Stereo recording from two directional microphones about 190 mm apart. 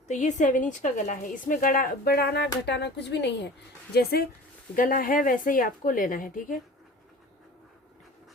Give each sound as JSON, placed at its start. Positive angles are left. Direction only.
{"t": 0.1, "sound": "a woman's voice", "side_deg": 40}